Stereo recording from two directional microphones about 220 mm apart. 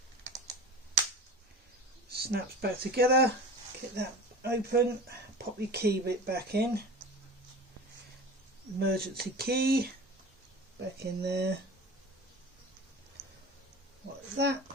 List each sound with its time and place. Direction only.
2.1 s speech: 45° right (ahead or behind)
4.4 s speech: 45° right (ahead or behind)
8.8 s speech: 45° right (ahead or behind)
14.3 s speech: 50° right (ahead or behind)